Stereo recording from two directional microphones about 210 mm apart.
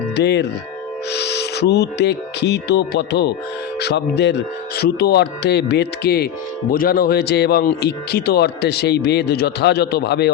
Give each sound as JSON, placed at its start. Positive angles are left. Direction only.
{"t": 0.2, "sound": "speech", "side_deg": 55}